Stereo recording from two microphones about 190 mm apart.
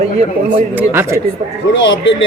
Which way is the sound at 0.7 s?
10° right (ahead or behind).